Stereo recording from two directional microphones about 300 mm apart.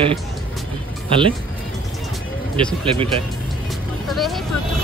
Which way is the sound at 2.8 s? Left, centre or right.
Centre.